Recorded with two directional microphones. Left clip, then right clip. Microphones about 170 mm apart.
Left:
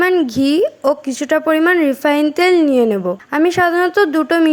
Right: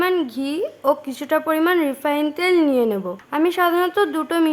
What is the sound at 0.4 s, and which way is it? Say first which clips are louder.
A woman's voice: left 5 dB; 30° left (ahead or behind).